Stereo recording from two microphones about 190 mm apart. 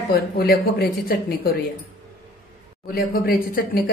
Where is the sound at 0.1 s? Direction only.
55° left (ahead or behind).